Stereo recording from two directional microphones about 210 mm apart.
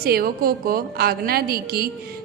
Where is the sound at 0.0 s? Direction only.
45° right (ahead or behind).